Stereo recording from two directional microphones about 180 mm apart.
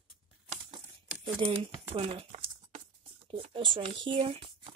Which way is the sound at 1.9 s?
30° right (ahead or behind).